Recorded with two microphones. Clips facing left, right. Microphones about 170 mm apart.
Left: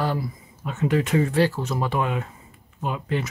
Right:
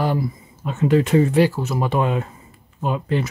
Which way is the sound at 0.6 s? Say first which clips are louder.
Right 5 dB; 30° right (ahead or behind).